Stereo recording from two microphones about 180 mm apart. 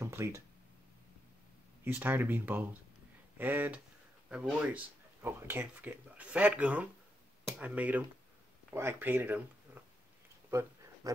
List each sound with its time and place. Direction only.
0.0 s speech: 15° right (ahead or behind)
1.9 s speech: 10° right (ahead or behind)